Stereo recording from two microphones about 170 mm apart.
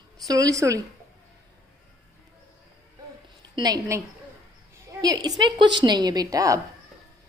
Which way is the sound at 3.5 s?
25° right (ahead or behind).